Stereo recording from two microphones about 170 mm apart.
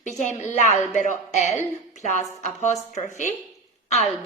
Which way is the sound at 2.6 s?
40° left (ahead or behind).